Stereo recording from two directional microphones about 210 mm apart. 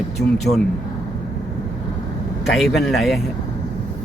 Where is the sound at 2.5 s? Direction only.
Centre (ahead or behind).